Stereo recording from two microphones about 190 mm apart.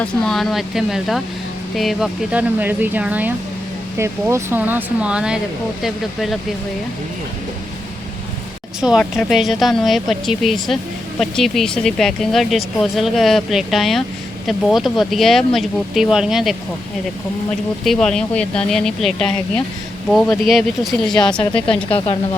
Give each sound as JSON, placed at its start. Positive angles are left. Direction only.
{"t": 0.0, "sound": "speech", "side_deg": 0}
{"t": 8.8, "sound": "speech", "side_deg": -5}
{"t": 17.8, "sound": "speech", "side_deg": 5}
{"t": 21.8, "sound": "speech", "side_deg": 30}